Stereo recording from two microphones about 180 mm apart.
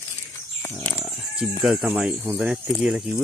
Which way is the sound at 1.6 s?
Centre (ahead or behind).